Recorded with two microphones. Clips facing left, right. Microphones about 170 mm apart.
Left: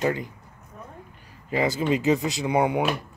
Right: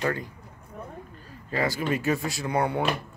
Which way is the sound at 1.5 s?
20° left (ahead or behind).